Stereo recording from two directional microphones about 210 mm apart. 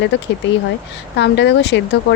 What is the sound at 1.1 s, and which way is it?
Speech, 55° left (ahead or behind).